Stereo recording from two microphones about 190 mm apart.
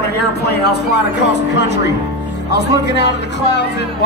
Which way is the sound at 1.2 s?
65° left (ahead or behind).